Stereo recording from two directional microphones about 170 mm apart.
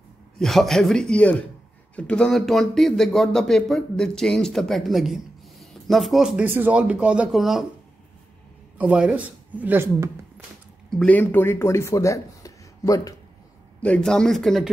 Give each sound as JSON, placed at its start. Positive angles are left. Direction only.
{"t": 0.4, "sound": "speech", "side_deg": 0}
{"t": 8.7, "sound": "speech", "side_deg": -5}
{"t": 10.9, "sound": "speech", "side_deg": 5}
{"t": 13.8, "sound": "speech", "side_deg": 5}